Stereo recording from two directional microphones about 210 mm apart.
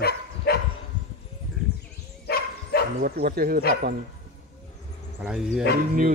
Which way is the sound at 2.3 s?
45° left (ahead or behind).